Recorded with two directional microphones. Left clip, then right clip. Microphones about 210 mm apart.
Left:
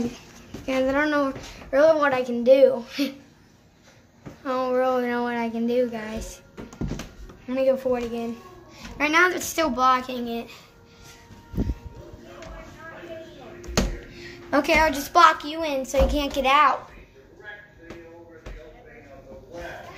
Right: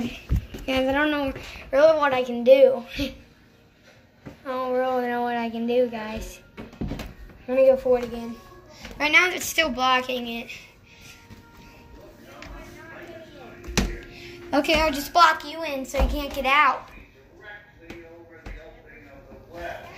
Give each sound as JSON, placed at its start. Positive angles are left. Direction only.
{"t": 0.7, "sound": "speech", "side_deg": -5}
{"t": 1.7, "sound": "speech", "side_deg": 15}
{"t": 4.5, "sound": "speech", "side_deg": 25}
{"t": 7.4, "sound": "speech", "side_deg": 0}
{"t": 7.8, "sound": "speech", "side_deg": 15}
{"t": 14.1, "sound": "a child's voice", "side_deg": 15}
{"t": 15.6, "sound": "a woman's voice", "side_deg": 35}